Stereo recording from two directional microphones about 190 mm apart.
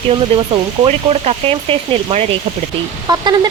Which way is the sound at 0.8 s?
30° right (ahead or behind).